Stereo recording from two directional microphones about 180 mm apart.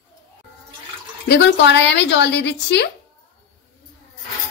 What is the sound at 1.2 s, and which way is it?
Speech, 70° left (ahead or behind).